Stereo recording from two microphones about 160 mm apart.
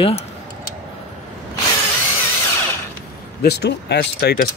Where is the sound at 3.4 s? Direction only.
90° left.